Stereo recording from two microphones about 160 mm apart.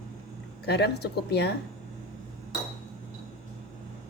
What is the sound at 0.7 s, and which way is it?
Speech, 90° left.